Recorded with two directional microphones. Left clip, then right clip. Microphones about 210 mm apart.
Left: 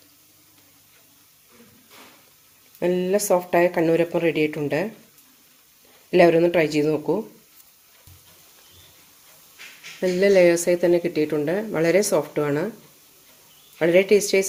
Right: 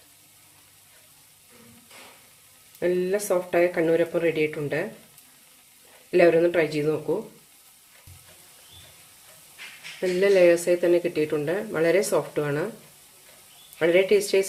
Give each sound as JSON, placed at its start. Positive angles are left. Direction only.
{"t": 2.8, "sound": "speech", "side_deg": 30}
{"t": 6.1, "sound": "speech", "side_deg": 30}
{"t": 10.0, "sound": "speech", "side_deg": 25}
{"t": 13.7, "sound": "speech", "side_deg": 25}